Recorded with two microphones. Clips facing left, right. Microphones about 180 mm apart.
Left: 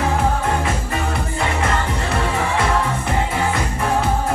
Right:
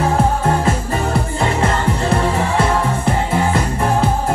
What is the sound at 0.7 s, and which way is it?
Music, 35° right (ahead or behind).